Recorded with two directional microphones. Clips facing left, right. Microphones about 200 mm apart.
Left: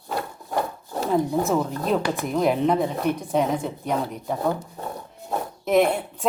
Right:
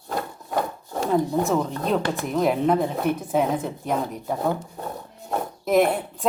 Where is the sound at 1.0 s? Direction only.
Centre (ahead or behind).